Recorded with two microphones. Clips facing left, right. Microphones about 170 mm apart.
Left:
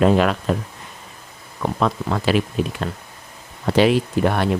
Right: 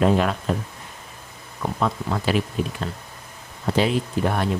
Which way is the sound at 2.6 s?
75° left (ahead or behind).